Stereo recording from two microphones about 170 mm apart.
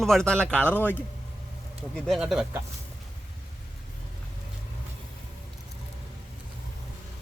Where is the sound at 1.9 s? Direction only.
Centre (ahead or behind).